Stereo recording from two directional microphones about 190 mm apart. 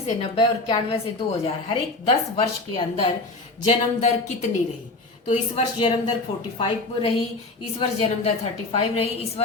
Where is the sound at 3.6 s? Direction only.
35° left (ahead or behind).